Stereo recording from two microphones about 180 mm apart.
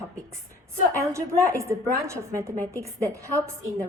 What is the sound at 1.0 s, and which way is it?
A woman's voice, 15° right (ahead or behind).